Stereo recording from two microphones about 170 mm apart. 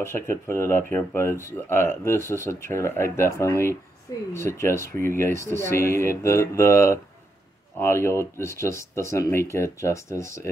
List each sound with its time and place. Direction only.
0.5 s speech: 15° left (ahead or behind)